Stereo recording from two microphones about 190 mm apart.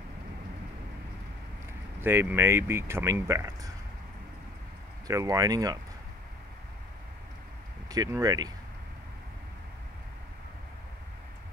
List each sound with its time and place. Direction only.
2.0 s speech: 10° right (ahead or behind)
5.0 s speech: 20° right (ahead or behind)
7.9 s speech: 20° right (ahead or behind)